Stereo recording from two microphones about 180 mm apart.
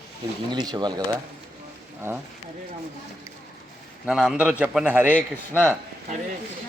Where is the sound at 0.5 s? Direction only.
25° right (ahead or behind).